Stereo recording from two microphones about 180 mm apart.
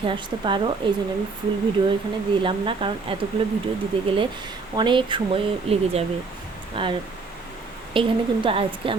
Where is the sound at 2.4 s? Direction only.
30° right (ahead or behind).